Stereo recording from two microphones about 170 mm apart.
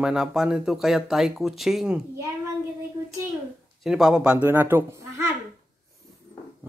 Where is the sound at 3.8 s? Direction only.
5° right (ahead or behind).